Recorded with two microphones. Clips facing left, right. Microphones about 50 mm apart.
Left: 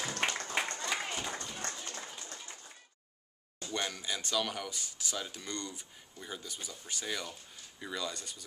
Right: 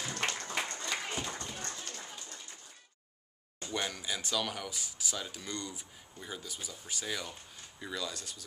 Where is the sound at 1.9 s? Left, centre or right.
Left.